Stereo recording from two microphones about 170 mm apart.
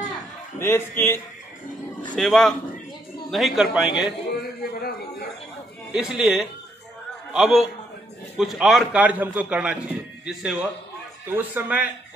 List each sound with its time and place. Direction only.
0.6 s a man's voice: 15° left (ahead or behind)
2.1 s a man's voice: centre (ahead or behind)
4.3 s a sound: 65° left (ahead or behind)
5.9 s a man's voice: 5° right (ahead or behind)